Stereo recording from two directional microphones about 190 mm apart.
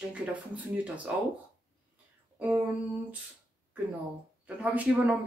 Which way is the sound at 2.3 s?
10° right (ahead or behind).